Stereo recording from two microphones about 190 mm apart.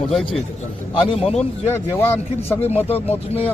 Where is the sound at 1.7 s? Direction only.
15° left (ahead or behind).